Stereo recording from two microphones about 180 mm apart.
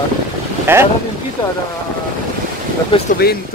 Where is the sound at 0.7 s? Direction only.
10° right (ahead or behind).